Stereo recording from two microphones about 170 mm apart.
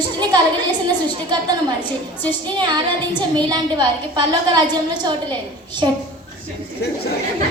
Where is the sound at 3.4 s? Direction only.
25° right (ahead or behind).